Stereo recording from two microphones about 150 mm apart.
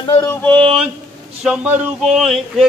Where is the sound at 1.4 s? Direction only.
5° right (ahead or behind).